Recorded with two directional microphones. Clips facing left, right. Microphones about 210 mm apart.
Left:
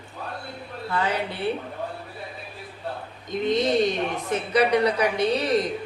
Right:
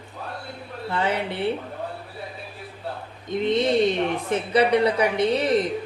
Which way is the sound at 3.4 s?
30° right (ahead or behind).